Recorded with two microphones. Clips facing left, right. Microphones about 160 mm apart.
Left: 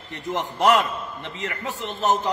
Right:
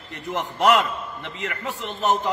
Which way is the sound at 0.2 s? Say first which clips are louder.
Even; 20° left (ahead or behind).